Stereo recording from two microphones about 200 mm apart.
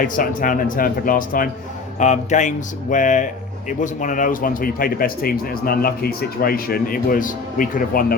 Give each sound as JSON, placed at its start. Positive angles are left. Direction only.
{"t": 0.0, "sound": "a man's voice", "side_deg": 45}